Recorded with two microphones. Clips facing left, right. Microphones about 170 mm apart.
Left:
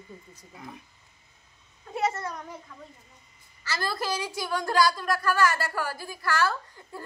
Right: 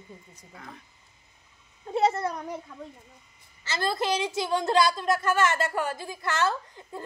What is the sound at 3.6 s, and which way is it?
A woman's voice, 25° right (ahead or behind).